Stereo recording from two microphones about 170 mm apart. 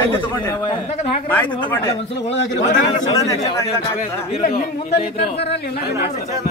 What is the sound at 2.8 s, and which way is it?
Speech, 25° left (ahead or behind).